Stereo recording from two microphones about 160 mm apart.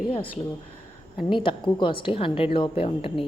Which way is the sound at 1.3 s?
30° left (ahead or behind).